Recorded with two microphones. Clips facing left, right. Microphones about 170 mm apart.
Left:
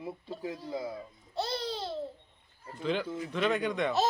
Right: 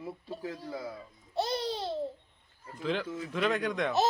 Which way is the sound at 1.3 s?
15° right (ahead or behind).